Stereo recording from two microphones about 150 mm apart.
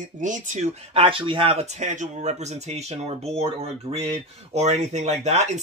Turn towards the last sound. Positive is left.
turn(degrees=-50)  # may be behind; listen again after turning